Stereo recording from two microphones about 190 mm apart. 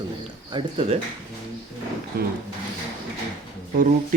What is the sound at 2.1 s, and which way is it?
Speech, 55° right (ahead or behind).